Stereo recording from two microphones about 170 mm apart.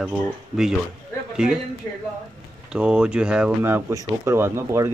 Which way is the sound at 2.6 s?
5° right (ahead or behind).